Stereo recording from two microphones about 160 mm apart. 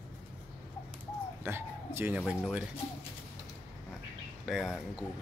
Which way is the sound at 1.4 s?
15° right (ahead or behind).